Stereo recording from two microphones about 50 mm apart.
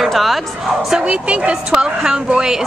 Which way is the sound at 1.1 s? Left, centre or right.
Right.